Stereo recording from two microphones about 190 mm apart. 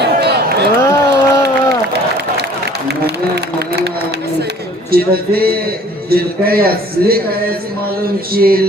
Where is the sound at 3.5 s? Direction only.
60° right (ahead or behind).